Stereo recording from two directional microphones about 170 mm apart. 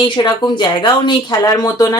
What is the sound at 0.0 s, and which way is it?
A woman's voice, 25° left (ahead or behind).